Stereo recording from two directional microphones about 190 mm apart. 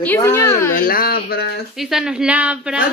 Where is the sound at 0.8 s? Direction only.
50° left (ahead or behind).